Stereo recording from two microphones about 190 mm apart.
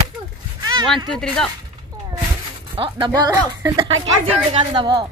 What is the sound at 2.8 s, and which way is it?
Speech, 30° right (ahead or behind).